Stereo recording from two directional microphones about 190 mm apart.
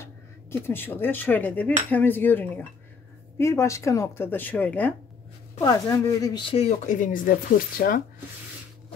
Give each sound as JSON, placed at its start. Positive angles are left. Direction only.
{"t": 0.0, "sound": "cutlery", "side_deg": 15}
{"t": 3.3, "sound": "speech", "side_deg": 15}